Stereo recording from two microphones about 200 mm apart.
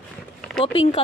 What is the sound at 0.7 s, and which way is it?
Speech, 30° left (ahead or behind).